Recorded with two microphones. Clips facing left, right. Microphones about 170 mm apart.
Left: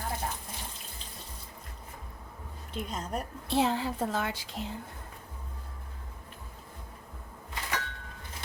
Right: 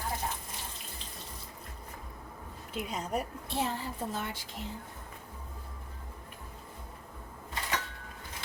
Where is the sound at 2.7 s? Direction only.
10° right (ahead or behind).